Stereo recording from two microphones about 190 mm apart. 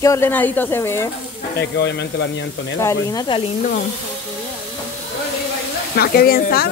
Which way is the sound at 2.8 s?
20° left (ahead or behind).